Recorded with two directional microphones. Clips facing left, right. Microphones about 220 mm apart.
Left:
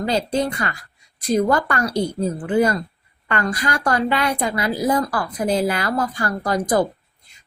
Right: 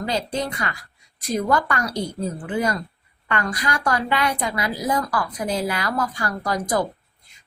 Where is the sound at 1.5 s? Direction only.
50° left (ahead or behind).